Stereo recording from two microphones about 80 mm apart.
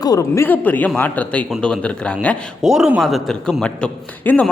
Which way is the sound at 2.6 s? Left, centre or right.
Centre.